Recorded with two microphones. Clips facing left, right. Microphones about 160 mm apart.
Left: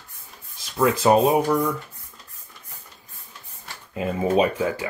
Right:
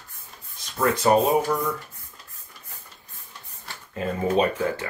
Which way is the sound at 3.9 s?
10° left (ahead or behind).